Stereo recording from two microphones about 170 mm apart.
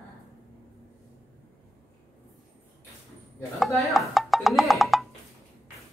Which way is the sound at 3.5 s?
Centre (ahead or behind).